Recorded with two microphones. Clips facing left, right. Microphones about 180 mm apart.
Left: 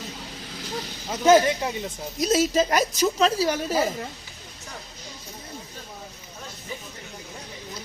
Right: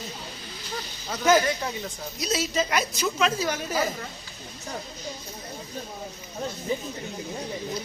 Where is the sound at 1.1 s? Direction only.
25° left (ahead or behind).